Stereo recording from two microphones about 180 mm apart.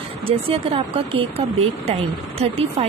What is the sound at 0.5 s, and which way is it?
Speech, 30° right (ahead or behind).